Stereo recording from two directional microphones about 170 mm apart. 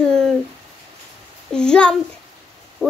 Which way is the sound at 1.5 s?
5° left (ahead or behind).